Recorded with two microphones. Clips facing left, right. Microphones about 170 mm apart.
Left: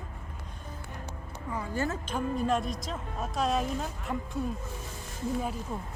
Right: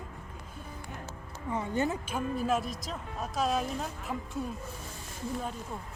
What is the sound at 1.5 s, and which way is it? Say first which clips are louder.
Speech: right 2 dB; 20° right (ahead or behind).